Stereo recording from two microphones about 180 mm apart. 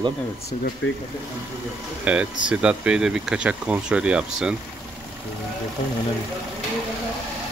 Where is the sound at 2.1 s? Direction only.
10° right (ahead or behind).